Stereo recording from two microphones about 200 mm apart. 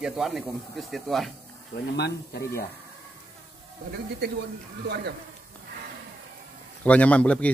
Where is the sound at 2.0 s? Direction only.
55° left (ahead or behind).